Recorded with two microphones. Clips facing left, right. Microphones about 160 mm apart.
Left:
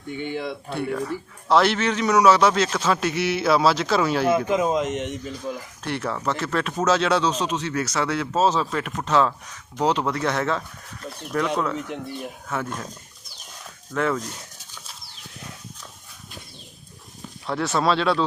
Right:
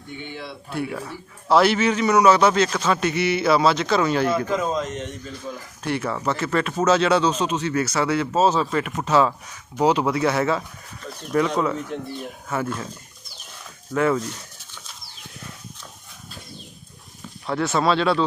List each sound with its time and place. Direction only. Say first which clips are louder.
0.7 s speech: left 1 dB; 5° right (ahead or behind)
4.4 s speech: left 2 dB; 15° left (ahead or behind)
5.2 s speech: left 3 dB; centre (ahead or behind)
13.9 s speech: right 3 dB; 5° right (ahead or behind)
17.4 s speech: right 1 dB; centre (ahead or behind)